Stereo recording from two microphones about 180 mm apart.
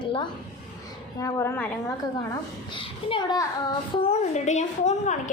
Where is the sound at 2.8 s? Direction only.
30° left (ahead or behind).